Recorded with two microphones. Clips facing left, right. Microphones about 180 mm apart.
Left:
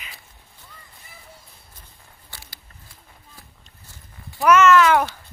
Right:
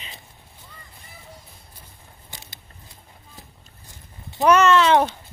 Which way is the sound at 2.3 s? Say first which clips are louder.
Right 2 dB; 20° right (ahead or behind).